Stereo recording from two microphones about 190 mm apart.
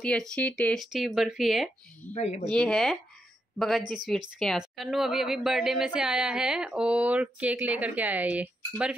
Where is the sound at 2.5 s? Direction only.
5° left (ahead or behind).